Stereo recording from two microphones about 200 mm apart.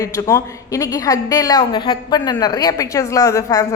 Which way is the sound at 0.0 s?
15° left (ahead or behind).